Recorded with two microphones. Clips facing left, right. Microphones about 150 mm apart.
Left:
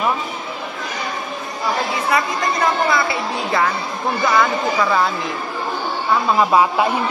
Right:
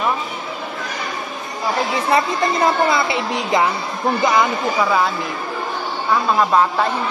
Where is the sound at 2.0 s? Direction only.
30° right (ahead or behind).